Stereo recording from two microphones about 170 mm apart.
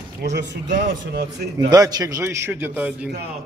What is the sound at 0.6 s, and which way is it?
Speech, 55° right (ahead or behind).